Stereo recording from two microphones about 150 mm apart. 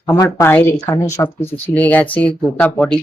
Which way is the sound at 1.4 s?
10° left (ahead or behind).